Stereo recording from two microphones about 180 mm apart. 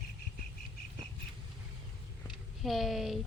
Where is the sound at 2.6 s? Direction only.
Centre (ahead or behind).